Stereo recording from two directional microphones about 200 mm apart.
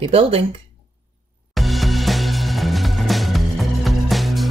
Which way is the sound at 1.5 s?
Centre (ahead or behind).